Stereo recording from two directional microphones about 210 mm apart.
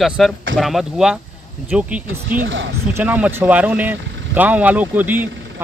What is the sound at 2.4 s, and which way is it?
Speech, 65° right (ahead or behind).